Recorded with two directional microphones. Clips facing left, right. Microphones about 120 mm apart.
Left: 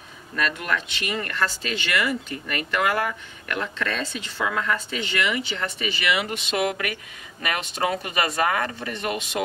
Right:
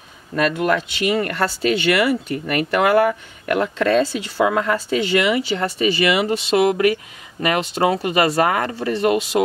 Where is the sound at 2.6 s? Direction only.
35° right (ahead or behind).